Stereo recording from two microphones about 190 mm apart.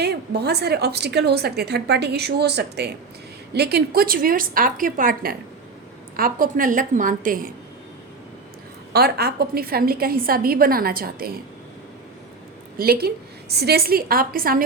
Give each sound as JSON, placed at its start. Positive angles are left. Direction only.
{"t": 0.0, "sound": "a woman's voice", "side_deg": -60}
{"t": 8.9, "sound": "a woman's voice", "side_deg": -55}
{"t": 12.8, "sound": "a woman's voice", "side_deg": -55}